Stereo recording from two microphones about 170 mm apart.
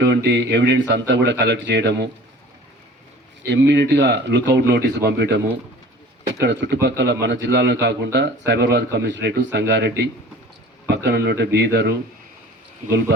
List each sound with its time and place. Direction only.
0.0 s a man's voice: 90° right
3.4 s a man's voice: 90° right
6.4 s a man's voice: 90° right